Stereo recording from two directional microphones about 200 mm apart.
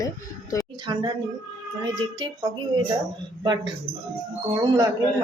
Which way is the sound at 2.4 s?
15° right (ahead or behind).